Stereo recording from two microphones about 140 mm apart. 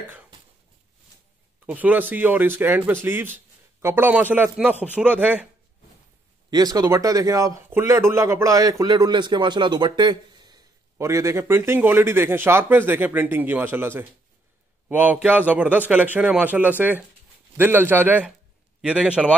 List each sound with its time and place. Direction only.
1.7 s a man's voice: 10° right (ahead or behind)
6.5 s a man's voice: 25° right (ahead or behind); by 19.2 s 5° right (ahead or behind)